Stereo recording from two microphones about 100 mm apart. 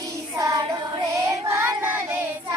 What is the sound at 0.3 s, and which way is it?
Child singing, 35° right (ahead or behind).